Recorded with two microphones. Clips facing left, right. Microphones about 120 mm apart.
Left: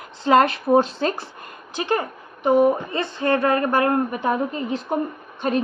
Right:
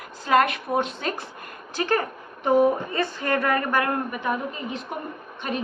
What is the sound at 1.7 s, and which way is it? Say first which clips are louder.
A woman's voice: left 1 dB; 20° left (ahead or behind).